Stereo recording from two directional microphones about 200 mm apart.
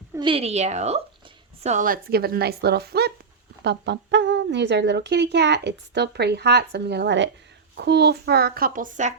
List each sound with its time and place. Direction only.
0.2 s a woman's voice: 25° right (ahead or behind)